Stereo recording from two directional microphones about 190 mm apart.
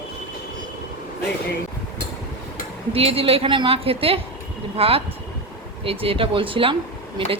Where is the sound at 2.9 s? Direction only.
30° right (ahead or behind).